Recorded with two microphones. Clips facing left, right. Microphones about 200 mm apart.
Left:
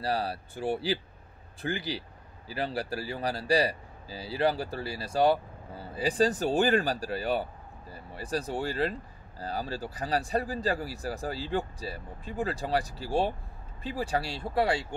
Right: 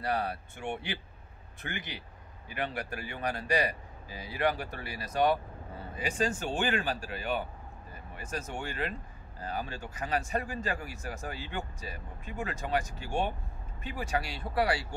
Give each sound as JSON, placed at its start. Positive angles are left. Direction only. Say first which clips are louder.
{"t": 0.0, "sound": "speech", "louder": "left 2 dB", "side_deg": 30}